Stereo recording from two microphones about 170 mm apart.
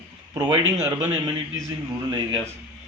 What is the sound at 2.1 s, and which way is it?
Speech, 25° right (ahead or behind).